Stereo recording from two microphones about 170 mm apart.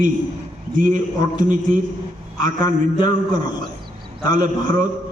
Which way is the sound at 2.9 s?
55° right (ahead or behind).